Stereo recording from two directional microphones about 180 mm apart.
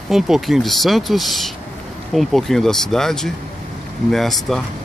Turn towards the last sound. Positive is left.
turn(degrees=0)  # may be behind; listen again after turning